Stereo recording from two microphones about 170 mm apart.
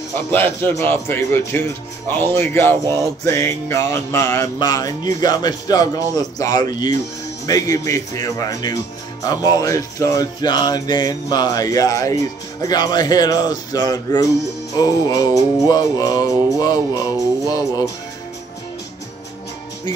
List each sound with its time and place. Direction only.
0.3 s a man's voice: 10° left (ahead or behind)
3.3 s music: 15° left (ahead or behind)